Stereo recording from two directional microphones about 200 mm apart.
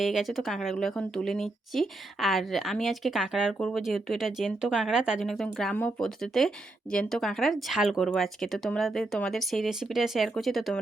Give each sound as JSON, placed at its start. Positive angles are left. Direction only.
{"t": 0.0, "sound": "speech", "side_deg": 0}